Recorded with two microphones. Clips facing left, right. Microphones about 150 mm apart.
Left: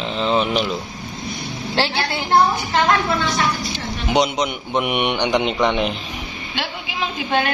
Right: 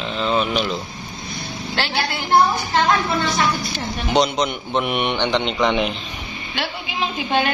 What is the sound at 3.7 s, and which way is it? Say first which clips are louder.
A man's voice: even; 15° left (ahead or behind).